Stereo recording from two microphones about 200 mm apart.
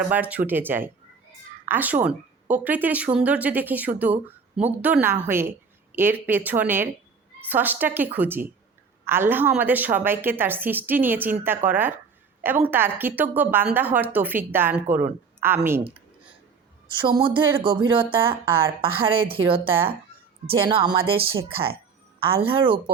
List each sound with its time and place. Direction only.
0.1 s speech: 5° right (ahead or behind)
17.0 s speech: 25° right (ahead or behind)